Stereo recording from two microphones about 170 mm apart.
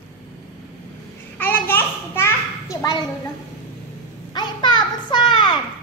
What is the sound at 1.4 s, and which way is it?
Children playing, 10° left (ahead or behind).